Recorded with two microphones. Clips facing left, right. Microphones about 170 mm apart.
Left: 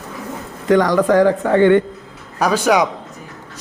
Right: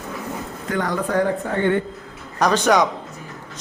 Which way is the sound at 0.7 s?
90° left.